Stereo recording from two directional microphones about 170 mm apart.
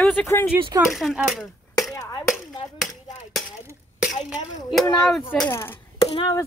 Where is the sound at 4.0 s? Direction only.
5° right (ahead or behind).